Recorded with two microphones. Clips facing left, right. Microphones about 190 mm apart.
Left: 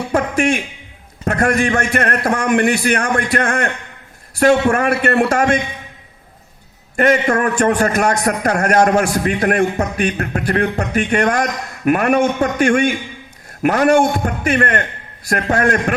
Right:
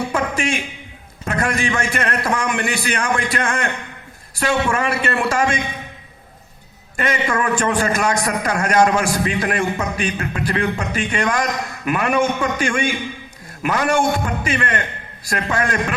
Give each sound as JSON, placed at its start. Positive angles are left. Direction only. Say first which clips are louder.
{"t": 0.3, "sound": "a sound", "louder": "left 6 dB", "side_deg": 60}
{"t": 1.2, "sound": "a man's voice", "louder": "left 5 dB", "side_deg": 50}
{"t": 6.9, "sound": "a man's voice", "louder": "left 6 dB", "side_deg": 55}